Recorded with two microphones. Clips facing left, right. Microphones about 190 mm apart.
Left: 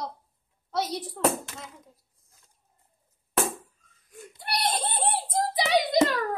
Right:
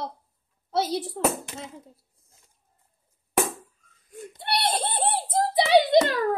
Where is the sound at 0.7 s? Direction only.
30° right (ahead or behind).